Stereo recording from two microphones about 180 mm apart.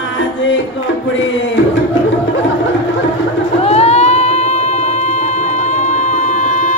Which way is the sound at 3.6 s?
35° left (ahead or behind).